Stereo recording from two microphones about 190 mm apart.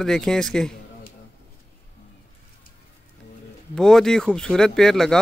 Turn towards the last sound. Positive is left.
turn(degrees=0)  # may be behind; listen again after turning